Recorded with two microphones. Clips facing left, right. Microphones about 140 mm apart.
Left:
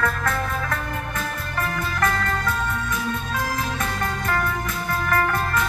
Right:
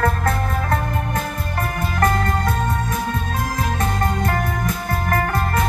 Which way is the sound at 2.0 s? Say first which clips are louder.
Right 5 dB; 35° right (ahead or behind).